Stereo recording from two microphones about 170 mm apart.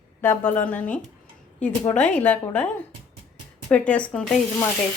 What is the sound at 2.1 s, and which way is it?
Speech, 10° left (ahead or behind).